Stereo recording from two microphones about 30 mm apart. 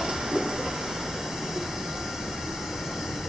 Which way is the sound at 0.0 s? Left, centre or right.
Centre.